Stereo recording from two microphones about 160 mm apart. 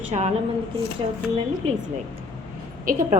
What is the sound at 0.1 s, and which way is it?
Speech, 45° right (ahead or behind).